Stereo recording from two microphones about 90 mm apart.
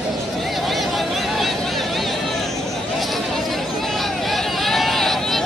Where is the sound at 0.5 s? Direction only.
Centre (ahead or behind).